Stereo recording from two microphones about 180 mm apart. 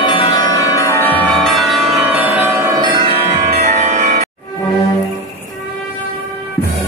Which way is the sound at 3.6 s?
40° right (ahead or behind).